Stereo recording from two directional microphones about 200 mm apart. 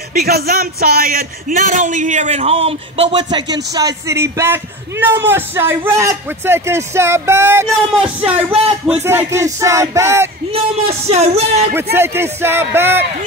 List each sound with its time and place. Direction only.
0.1 s a man's voice: 50° right (ahead or behind); by 10.3 s 15° right (ahead or behind)
10.5 s speech: 30° right (ahead or behind)
11.7 s a man's voice: 10° right (ahead or behind)